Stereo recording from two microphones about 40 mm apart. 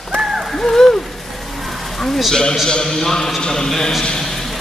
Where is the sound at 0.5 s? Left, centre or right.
Centre.